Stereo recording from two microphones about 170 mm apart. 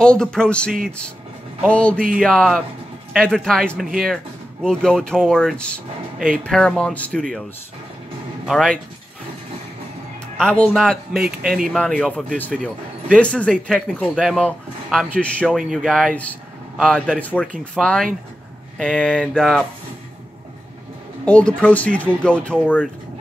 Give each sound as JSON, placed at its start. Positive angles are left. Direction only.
{"t": 0.0, "sound": "speech", "side_deg": 5}
{"t": 8.5, "sound": "speech", "side_deg": 5}
{"t": 10.3, "sound": "speech", "side_deg": 5}
{"t": 21.3, "sound": "speech", "side_deg": 5}